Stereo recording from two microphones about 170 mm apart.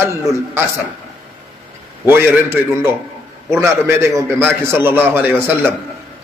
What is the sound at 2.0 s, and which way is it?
A man's voice, 15° right (ahead or behind).